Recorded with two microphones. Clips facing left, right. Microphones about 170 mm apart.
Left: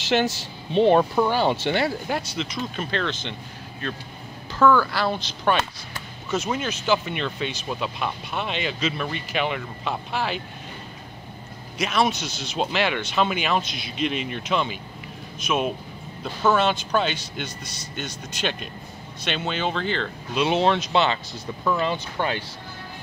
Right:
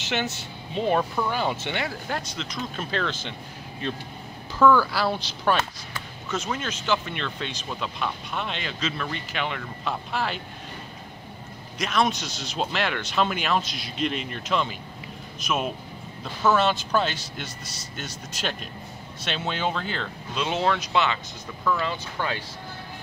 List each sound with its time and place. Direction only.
0.0 s speech: 35° left (ahead or behind)
2.0 s speech: 10° left (ahead or behind); by 3.3 s 5° right (ahead or behind)
4.6 s speech: 5° right (ahead or behind)
6.3 s speech: 10° left (ahead or behind)
9.8 s speech: 5° left (ahead or behind)
11.8 s speech: 5° left (ahead or behind)
20.0 s speech: 15° left (ahead or behind)